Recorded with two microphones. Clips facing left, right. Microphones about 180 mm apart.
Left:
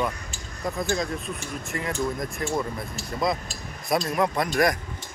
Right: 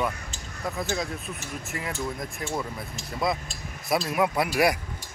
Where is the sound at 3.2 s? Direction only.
5° right (ahead or behind).